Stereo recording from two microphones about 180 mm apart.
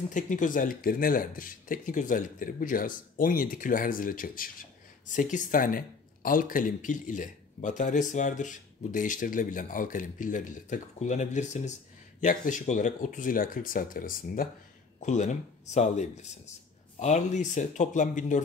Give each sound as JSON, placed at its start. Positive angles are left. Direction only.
{"t": 0.1, "sound": "speech", "side_deg": 45}